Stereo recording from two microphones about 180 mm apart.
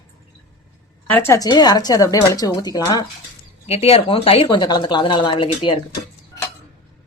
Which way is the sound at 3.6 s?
35° left (ahead or behind).